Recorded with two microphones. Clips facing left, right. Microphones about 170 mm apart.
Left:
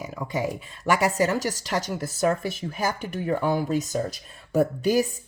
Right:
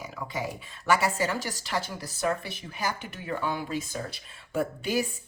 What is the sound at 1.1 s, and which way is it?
Speech, 45° left (ahead or behind).